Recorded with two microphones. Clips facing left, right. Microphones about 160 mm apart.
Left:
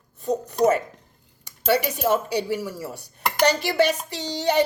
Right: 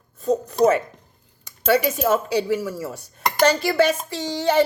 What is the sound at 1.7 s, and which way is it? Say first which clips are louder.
Speech: right 2 dB; 45° right (ahead or behind).